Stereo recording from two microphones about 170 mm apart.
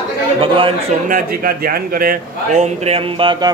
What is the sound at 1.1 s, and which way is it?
Speech, 55° right (ahead or behind).